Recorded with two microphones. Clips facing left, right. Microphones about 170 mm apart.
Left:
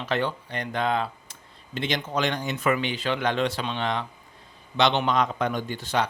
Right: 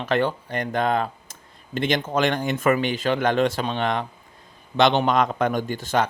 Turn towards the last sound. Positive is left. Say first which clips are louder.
# right 4 dB
turn(degrees=-45)  # may be behind; listen again after turning